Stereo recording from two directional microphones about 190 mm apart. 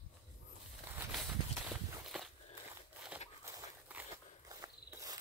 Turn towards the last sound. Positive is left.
turn(degrees=-15)  # may be behind; listen again after turning